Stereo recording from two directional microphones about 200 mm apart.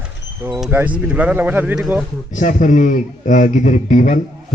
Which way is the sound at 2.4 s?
40° left (ahead or behind).